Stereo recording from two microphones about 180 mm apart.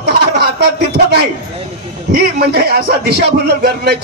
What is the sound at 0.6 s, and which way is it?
Speech, 65° right (ahead or behind).